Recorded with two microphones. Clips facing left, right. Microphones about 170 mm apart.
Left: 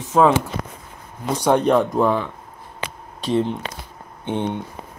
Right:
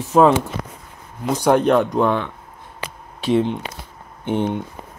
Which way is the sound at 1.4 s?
Centre (ahead or behind).